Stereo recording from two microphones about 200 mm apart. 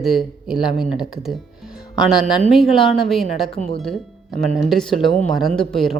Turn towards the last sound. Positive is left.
turn(degrees=0)  # may be behind; listen again after turning